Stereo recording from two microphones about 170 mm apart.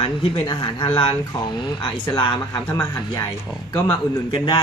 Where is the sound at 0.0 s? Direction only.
30° left (ahead or behind).